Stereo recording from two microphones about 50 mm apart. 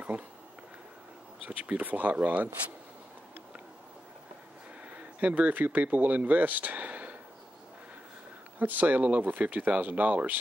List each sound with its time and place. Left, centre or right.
0.1 s speech: right
1.4 s speech: right
4.8 s speech: right
8.5 s speech: right